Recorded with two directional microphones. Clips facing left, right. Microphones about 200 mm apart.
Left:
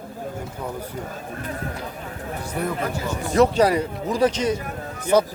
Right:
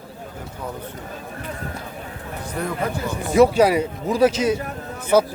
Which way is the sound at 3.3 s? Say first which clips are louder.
Right 3 dB; 10° right (ahead or behind).